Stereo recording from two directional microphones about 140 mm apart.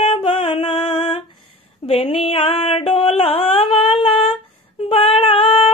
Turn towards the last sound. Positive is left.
turn(degrees=40)  # may be behind; listen again after turning